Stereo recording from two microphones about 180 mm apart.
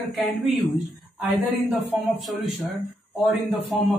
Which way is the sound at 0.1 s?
Centre (ahead or behind).